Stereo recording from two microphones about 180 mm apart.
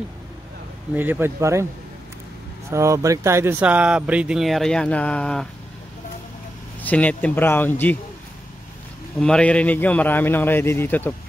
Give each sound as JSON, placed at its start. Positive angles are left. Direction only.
{"t": 0.9, "sound": "speech", "side_deg": -10}
{"t": 2.7, "sound": "speech", "side_deg": -15}
{"t": 6.8, "sound": "a man's voice", "side_deg": 10}
{"t": 9.2, "sound": "a man's voice", "side_deg": 5}